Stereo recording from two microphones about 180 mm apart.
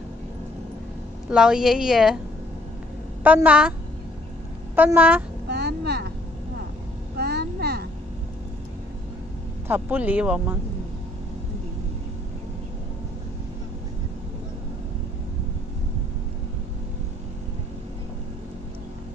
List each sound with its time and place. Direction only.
1.3 s a woman's voice: 5° right (ahead or behind)
3.3 s speech: 10° right (ahead or behind)
4.7 s speech: 10° right (ahead or behind)
5.5 s vehicle: 65° right (ahead or behind)
7.2 s a sound: 65° right (ahead or behind)
9.7 s speech: 10° right (ahead or behind)